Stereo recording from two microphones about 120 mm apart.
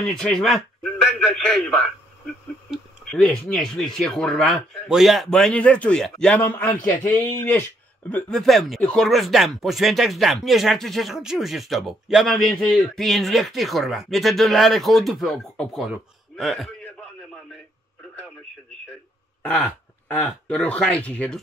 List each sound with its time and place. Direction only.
0.0 s speech: 5° left (ahead or behind)
3.1 s speech: 5° left (ahead or behind)
19.4 s a sound: 10° left (ahead or behind)
20.4 s speech: 10° left (ahead or behind)